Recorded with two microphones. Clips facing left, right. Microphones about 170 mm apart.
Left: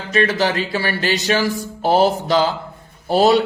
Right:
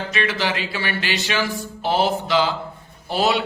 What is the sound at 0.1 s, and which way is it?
A man's voice, 40° left (ahead or behind).